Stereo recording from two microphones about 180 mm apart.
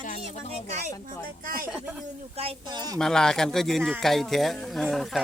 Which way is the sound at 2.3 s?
35° right (ahead or behind).